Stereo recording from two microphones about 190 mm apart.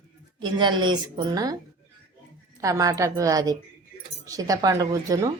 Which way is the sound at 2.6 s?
15° right (ahead or behind).